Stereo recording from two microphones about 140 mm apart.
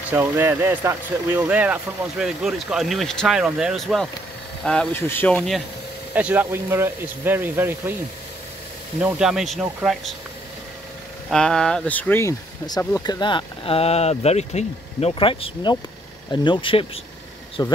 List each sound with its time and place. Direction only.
0.1 s speech: 15° right (ahead or behind); by 4.1 s centre (ahead or behind)
4.9 s speech: 15° left (ahead or behind)
6.1 s speech: 10° right (ahead or behind)
9.0 s speech: 5° right (ahead or behind)
11.2 s speech: 5° left (ahead or behind); by 17.7 s 30° left (ahead or behind)